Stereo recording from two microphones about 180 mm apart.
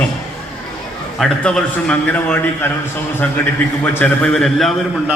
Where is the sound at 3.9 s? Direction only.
5° left (ahead or behind).